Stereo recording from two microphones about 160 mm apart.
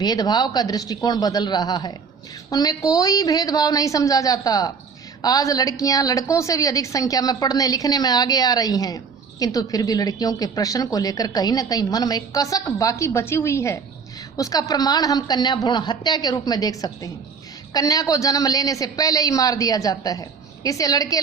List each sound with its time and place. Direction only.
0.0 s a woman's voice: 25° left (ahead or behind)